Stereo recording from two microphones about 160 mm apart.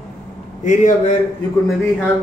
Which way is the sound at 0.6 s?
50° left (ahead or behind).